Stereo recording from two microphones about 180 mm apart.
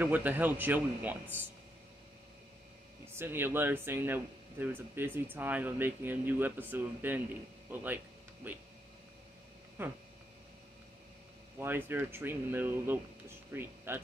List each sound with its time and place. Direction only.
0.0 s speech: 10° right (ahead or behind)
3.2 s speech: 10° right (ahead or behind)
9.8 s speech: 10° right (ahead or behind)
11.5 s speech: 10° right (ahead or behind)